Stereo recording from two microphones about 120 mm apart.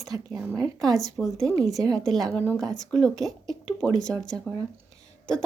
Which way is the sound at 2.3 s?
15° left (ahead or behind).